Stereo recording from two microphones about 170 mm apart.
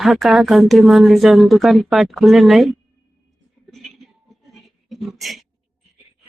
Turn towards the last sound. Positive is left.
turn(degrees=0)  # may be behind; listen again after turning